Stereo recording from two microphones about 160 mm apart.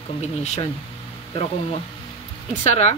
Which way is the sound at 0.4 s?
45° left (ahead or behind).